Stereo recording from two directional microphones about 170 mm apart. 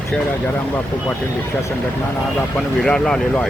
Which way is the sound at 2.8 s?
5° left (ahead or behind).